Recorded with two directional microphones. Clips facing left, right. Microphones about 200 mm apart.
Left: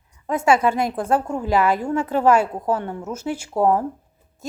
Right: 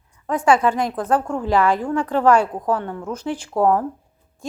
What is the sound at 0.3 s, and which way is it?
Speech, 25° left (ahead or behind).